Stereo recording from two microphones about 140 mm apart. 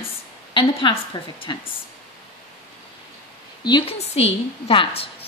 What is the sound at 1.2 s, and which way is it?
Speech, 30° left (ahead or behind).